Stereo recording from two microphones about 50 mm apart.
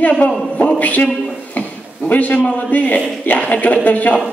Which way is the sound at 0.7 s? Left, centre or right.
Left.